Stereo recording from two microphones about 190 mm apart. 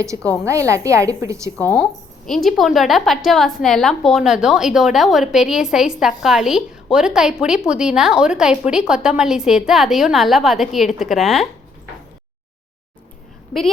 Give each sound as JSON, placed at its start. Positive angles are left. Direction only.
{"t": 0.0, "sound": "a woman's voice", "side_deg": -15}
{"t": 1.7, "sound": "a woman's voice", "side_deg": 0}